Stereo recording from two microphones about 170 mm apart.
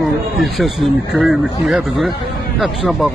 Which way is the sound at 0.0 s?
Centre (ahead or behind).